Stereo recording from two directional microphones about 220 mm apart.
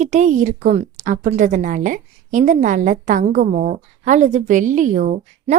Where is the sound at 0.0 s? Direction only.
35° right (ahead or behind).